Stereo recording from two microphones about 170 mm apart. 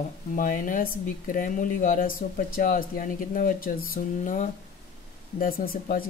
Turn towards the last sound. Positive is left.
turn(degrees=55)  # may be behind; listen again after turning